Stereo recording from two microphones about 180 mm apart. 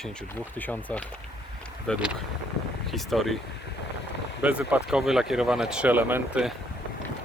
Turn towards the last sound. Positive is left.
turn(degrees=-5)  # may be behind; listen again after turning